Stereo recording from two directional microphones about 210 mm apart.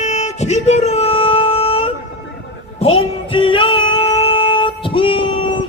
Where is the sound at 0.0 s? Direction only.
35° left (ahead or behind).